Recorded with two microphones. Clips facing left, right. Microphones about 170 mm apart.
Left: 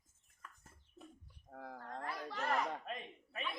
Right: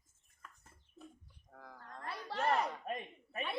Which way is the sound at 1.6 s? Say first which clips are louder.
Left 6 dB; 55° left (ahead or behind).